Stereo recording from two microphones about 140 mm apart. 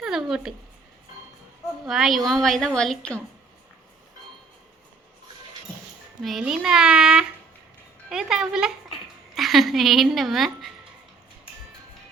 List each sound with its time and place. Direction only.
0.0 s a sound: 5° right (ahead or behind)
1.8 s a woman's voice: centre (ahead or behind)
6.2 s a woman's voice: centre (ahead or behind)